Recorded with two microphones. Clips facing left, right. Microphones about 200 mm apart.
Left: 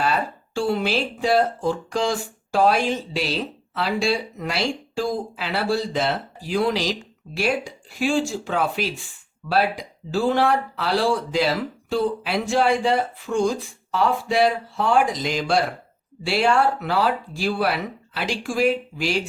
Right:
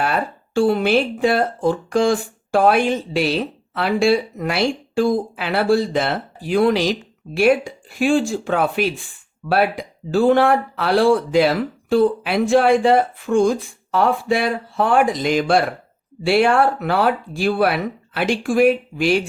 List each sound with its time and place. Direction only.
0.0 s speech: 55° right (ahead or behind)